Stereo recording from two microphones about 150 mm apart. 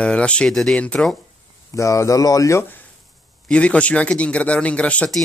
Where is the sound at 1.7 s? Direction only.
20° left (ahead or behind).